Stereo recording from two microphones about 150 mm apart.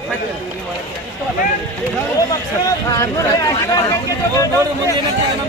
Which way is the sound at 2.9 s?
25° left (ahead or behind).